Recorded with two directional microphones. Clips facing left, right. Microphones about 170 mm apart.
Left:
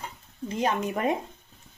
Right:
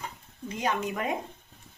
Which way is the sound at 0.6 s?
30° left (ahead or behind).